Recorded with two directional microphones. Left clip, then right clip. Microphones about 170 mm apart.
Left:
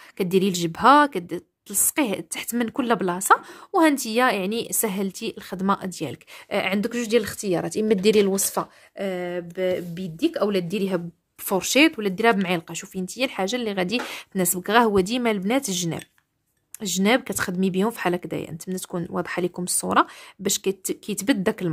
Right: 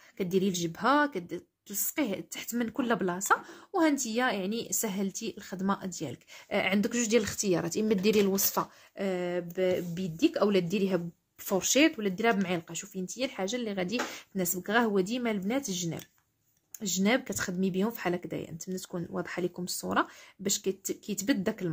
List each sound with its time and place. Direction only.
0.2 s a woman's voice: 50° left (ahead or behind)
6.5 s speech: 25° left (ahead or behind)
11.4 s a woman's voice: 35° left (ahead or behind)